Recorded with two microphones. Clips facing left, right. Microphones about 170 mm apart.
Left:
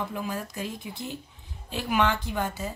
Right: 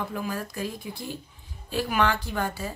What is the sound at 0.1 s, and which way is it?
Speech, 20° left (ahead or behind).